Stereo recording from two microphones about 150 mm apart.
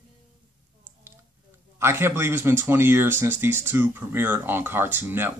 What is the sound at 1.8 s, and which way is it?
Speech, 15° right (ahead or behind).